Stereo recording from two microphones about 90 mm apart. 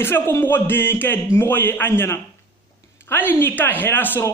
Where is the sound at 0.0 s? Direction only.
25° left (ahead or behind).